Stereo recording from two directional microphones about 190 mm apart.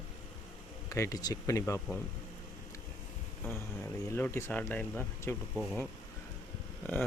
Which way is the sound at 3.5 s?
10° left (ahead or behind).